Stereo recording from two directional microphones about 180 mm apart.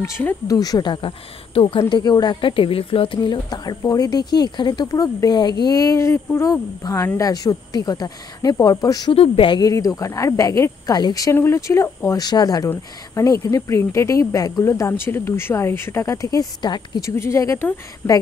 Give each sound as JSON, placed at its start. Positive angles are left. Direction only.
{"t": 0.0, "sound": "speech", "side_deg": 15}
{"t": 9.1, "sound": "a woman's voice", "side_deg": 30}